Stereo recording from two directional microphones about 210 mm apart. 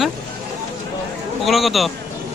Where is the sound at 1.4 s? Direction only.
Centre (ahead or behind).